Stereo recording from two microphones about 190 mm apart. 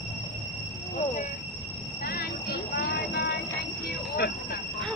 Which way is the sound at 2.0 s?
55° left (ahead or behind).